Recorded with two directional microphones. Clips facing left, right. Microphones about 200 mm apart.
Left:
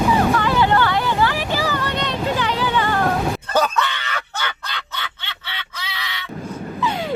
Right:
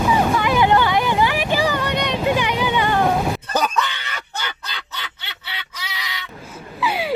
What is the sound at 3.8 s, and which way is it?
Screaming, 15° right (ahead or behind).